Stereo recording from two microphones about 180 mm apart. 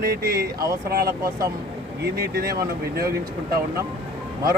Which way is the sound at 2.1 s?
60° right (ahead or behind).